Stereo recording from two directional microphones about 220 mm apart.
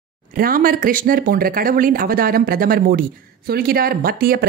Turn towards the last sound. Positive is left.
turn(degrees=-40)  # may be behind; listen again after turning